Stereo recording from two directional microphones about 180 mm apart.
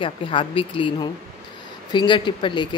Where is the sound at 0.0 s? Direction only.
30° left (ahead or behind).